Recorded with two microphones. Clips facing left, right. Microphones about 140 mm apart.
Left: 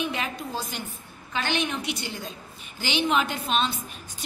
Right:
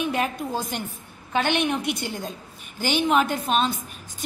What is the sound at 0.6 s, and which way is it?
A woman's voice, 55° right (ahead or behind).